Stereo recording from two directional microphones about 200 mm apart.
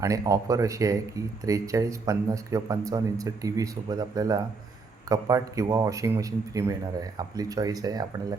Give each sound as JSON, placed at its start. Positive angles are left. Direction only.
{"t": 0.0, "sound": "speech", "side_deg": -15}